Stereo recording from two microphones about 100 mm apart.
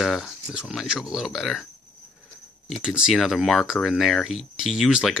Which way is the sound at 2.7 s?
5° right (ahead or behind).